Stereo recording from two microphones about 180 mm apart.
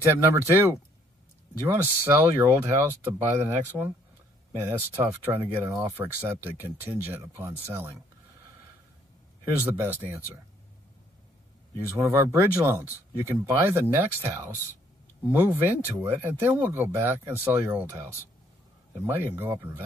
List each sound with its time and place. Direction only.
0.0 s speech: 15° right (ahead or behind)
9.6 s speech: 10° right (ahead or behind)
12.0 s speech: 15° right (ahead or behind)